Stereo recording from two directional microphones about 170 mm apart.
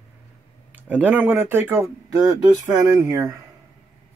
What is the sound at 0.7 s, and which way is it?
Speech, 10° right (ahead or behind).